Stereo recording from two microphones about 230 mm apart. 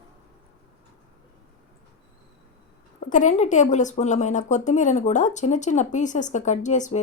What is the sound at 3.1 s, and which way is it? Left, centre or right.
A woman's voice, left.